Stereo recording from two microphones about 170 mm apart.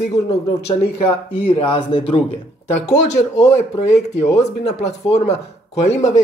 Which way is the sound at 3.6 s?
45° left (ahead or behind).